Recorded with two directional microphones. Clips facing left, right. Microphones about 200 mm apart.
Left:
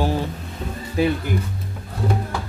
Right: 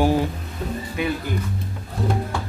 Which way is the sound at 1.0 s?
35° left (ahead or behind).